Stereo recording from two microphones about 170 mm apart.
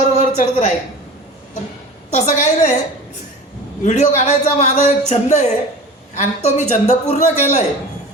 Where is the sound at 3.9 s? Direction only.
40° left (ahead or behind).